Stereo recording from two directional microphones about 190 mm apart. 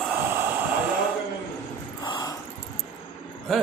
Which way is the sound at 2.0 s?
20° left (ahead or behind).